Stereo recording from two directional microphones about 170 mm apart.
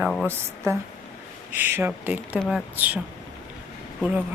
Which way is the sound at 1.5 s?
15° right (ahead or behind).